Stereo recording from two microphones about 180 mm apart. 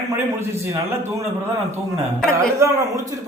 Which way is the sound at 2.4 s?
15° right (ahead or behind).